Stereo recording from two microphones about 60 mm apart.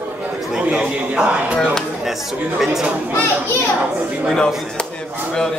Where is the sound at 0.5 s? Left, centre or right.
Centre.